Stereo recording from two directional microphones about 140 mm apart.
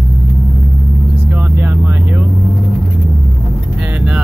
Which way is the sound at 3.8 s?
10° right (ahead or behind).